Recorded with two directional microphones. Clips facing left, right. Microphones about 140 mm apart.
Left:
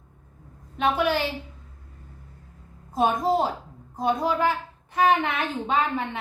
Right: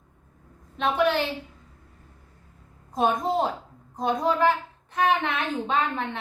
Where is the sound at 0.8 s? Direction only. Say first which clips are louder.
Even; 5° left (ahead or behind).